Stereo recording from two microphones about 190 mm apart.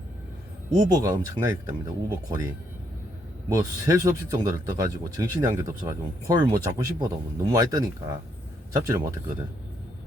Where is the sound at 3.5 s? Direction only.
15° right (ahead or behind).